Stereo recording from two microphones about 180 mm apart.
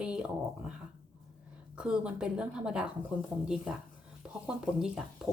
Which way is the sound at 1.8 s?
5° right (ahead or behind).